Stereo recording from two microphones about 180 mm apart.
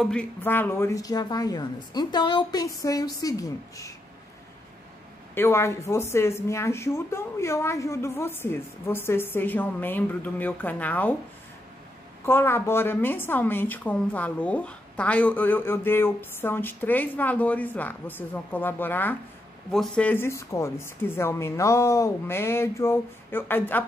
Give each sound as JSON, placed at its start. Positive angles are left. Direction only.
{"t": 0.0, "sound": "a woman's voice", "side_deg": 5}
{"t": 5.3, "sound": "a woman's voice", "side_deg": 15}
{"t": 12.3, "sound": "a woman's voice", "side_deg": 15}